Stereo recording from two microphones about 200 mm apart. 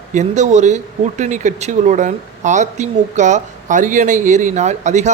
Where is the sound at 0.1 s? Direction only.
35° right (ahead or behind).